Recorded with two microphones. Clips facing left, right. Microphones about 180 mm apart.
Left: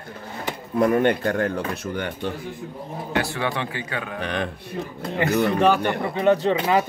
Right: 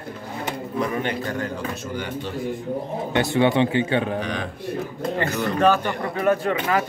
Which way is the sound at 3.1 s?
20° right (ahead or behind).